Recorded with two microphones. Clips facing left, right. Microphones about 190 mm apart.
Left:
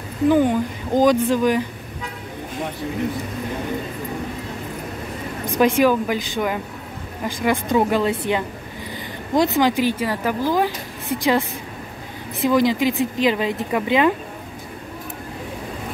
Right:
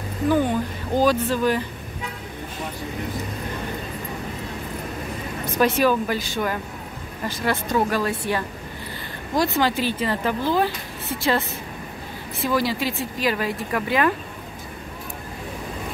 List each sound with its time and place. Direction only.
0.3 s speech: 15° left (ahead or behind)
5.6 s speech: 15° left (ahead or behind)